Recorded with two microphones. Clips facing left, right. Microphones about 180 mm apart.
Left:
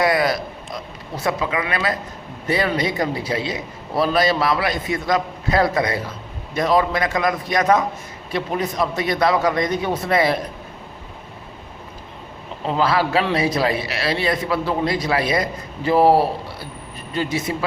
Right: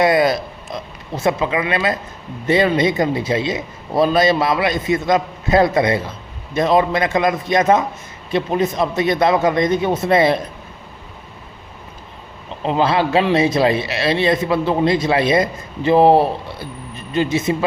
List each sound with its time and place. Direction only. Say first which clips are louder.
0.0 s a man's voice: right 4 dB; 25° right (ahead or behind)
12.6 s a man's voice: right 3 dB; 20° right (ahead or behind)